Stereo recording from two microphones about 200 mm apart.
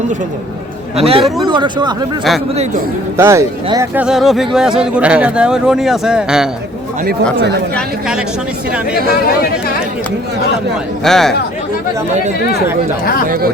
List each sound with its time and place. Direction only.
0.9 s speech: 30° right (ahead or behind)
3.2 s speech: 15° right (ahead or behind)
4.0 s speech: centre (ahead or behind)
7.8 s speech: 5° right (ahead or behind)
11.0 s speech: centre (ahead or behind)
12.1 s speech: 35° right (ahead or behind)
13.2 s speech: 45° right (ahead or behind)